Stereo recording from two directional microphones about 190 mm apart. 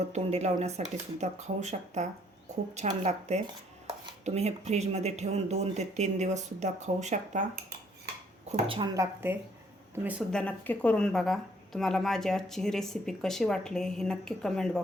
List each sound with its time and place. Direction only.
0.1 s speech: 35° right (ahead or behind)
8.4 s speech: 30° right (ahead or behind)
9.0 s speech: 10° right (ahead or behind)
10.3 s a woman's voice: 10° left (ahead or behind)